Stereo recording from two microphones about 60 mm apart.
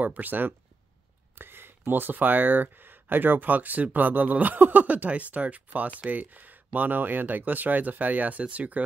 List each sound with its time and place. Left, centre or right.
0.0 s speech: right